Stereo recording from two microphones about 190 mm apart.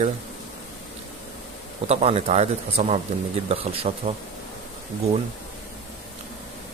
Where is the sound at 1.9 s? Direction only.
35° right (ahead or behind).